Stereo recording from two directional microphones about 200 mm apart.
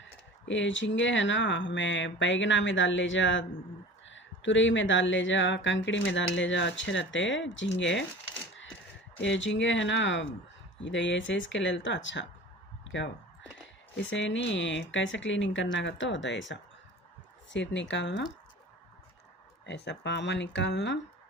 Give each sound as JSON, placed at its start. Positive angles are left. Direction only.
{"t": 0.0, "sound": "speech", "side_deg": 65}
{"t": 9.2, "sound": "speech", "side_deg": 65}
{"t": 13.9, "sound": "speech", "side_deg": 70}
{"t": 19.6, "sound": "speech", "side_deg": 60}